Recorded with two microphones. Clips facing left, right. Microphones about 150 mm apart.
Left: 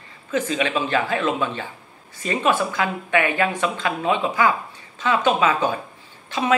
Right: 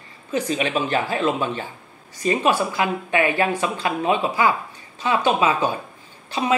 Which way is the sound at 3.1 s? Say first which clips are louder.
Even; 35° right (ahead or behind).